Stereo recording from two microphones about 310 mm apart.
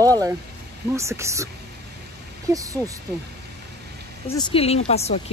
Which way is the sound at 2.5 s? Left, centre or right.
Centre.